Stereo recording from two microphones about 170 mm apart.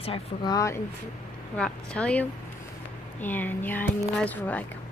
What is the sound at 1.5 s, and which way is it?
Speech, 5° left (ahead or behind).